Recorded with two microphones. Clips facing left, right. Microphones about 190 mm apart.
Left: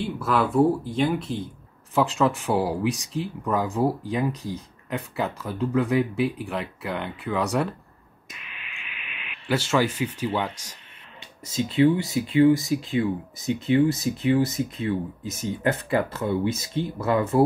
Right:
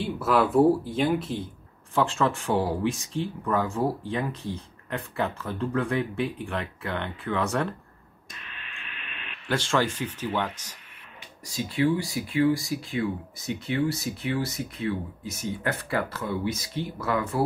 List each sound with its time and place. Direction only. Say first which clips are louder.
0.0 s speech: right 1 dB; centre (ahead or behind)
4.3 s speech: left 3 dB; 40° left (ahead or behind)
4.8 s speech: left 1 dB; 5° left (ahead or behind)
8.5 s radio: even; 5° left (ahead or behind)
11.4 s speech: left 5 dB; 20° left (ahead or behind)